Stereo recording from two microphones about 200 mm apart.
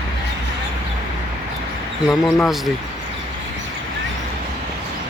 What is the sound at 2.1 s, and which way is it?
Speech, centre (ahead or behind).